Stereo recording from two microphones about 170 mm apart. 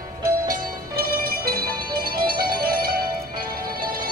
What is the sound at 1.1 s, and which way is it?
Music, 60° right (ahead or behind).